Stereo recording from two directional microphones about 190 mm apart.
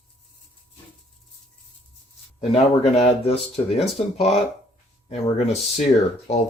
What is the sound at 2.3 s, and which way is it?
Speech, 35° left (ahead or behind).